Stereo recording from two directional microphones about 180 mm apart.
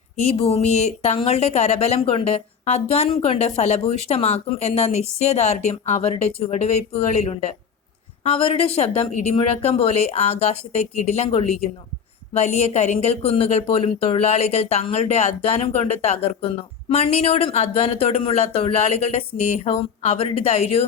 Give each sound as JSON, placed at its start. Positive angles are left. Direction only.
{"t": 0.3, "sound": "speech", "side_deg": 35}